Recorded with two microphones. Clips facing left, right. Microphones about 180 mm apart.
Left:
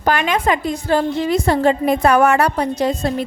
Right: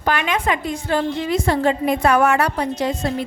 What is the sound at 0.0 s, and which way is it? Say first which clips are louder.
Speech: left 3 dB; 40° left (ahead or behind).